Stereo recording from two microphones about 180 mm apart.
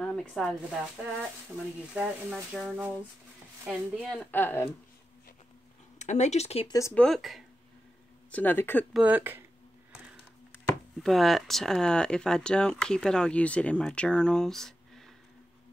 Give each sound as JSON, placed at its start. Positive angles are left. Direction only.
{"t": 0.0, "sound": "a sound", "side_deg": 5}
{"t": 2.0, "sound": "speech", "side_deg": -5}
{"t": 5.9, "sound": "speech", "side_deg": 40}
{"t": 6.7, "sound": "speech", "side_deg": 15}
{"t": 7.0, "sound": "speech", "side_deg": 0}
{"t": 8.9, "sound": "speech", "side_deg": -10}
{"t": 11.0, "sound": "speech", "side_deg": 0}